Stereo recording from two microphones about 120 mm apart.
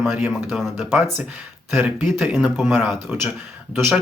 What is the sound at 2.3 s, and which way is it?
Speech, centre (ahead or behind).